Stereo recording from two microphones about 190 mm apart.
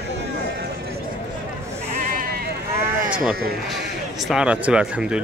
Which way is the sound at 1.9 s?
45° right (ahead or behind).